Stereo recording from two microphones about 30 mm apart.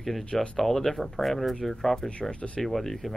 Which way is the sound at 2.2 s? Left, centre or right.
Left.